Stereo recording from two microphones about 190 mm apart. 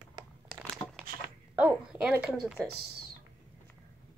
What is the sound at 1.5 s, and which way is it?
Speech, 5° right (ahead or behind).